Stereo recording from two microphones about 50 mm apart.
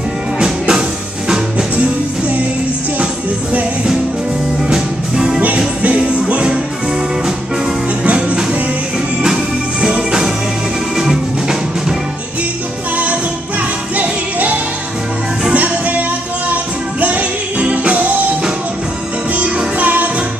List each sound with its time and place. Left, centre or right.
0.4 s music: centre
4.6 s music: centre
5.8 s music: right
9.2 s music: centre
15.5 s music: right
17.0 s music: right
19.3 s music: right